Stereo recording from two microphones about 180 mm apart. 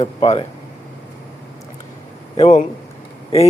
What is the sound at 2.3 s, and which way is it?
Speech, 40° left (ahead or behind).